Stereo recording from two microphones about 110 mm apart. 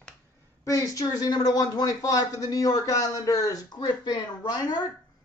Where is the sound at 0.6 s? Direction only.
35° left (ahead or behind).